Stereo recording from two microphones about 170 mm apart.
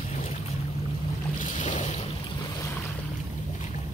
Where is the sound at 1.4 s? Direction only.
45° left (ahead or behind).